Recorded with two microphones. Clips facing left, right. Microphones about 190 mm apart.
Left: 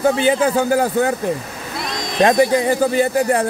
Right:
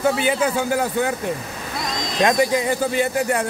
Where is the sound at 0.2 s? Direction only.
30° left (ahead or behind).